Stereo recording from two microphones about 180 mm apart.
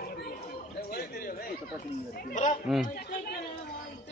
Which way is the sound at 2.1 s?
50° left (ahead or behind).